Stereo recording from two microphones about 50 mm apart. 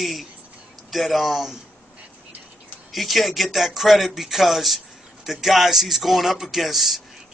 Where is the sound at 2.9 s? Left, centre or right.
Centre.